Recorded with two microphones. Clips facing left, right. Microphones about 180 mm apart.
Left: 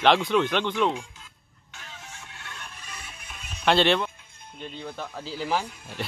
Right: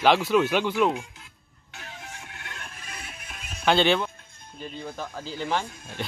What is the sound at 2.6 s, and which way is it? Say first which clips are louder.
Music: right 2 dB; 50° right (ahead or behind).